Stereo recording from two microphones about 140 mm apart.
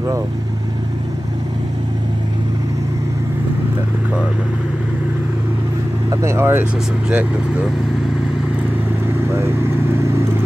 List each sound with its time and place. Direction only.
6.0 s speech: 20° right (ahead or behind)